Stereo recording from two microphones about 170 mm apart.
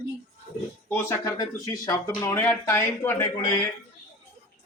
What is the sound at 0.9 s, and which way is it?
Speech, 15° left (ahead or behind).